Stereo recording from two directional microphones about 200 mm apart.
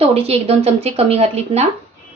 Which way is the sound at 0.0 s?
30° right (ahead or behind).